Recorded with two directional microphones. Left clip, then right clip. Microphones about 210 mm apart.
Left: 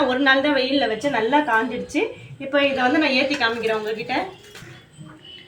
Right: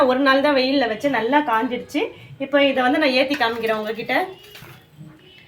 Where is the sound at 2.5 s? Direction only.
55° right (ahead or behind).